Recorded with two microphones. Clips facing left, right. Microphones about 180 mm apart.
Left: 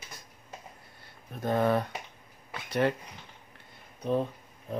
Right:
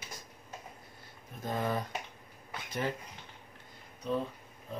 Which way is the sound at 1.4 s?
65° left (ahead or behind).